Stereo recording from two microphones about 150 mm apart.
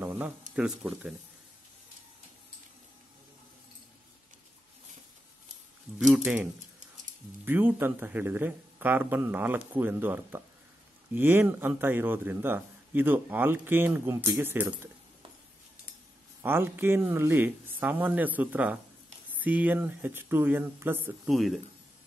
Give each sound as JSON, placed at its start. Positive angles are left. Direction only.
{"t": 0.0, "sound": "a sound", "side_deg": -10}
{"t": 0.6, "sound": "speech", "side_deg": -5}
{"t": 5.9, "sound": "a man's voice", "side_deg": 0}
{"t": 16.4, "sound": "a man's voice", "side_deg": -15}
{"t": 21.3, "sound": "speech", "side_deg": 0}